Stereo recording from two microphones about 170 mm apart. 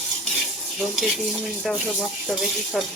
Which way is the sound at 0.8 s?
Centre (ahead or behind).